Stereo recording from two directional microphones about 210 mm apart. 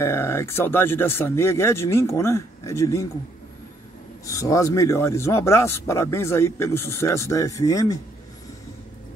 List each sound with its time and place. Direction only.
0.0 s speech: 10° left (ahead or behind)
4.3 s speech: 15° left (ahead or behind)